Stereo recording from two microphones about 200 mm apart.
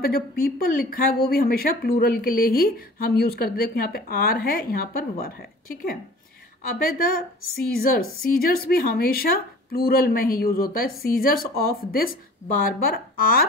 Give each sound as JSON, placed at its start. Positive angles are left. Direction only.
{"t": 0.0, "sound": "a woman's voice", "side_deg": 50}